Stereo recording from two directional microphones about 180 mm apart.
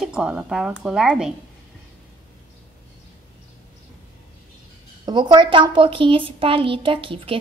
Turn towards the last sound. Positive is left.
turn(degrees=-30)  # may be behind; listen again after turning